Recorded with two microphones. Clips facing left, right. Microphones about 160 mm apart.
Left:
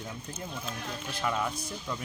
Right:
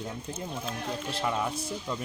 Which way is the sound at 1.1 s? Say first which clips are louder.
Even; 30° right (ahead or behind).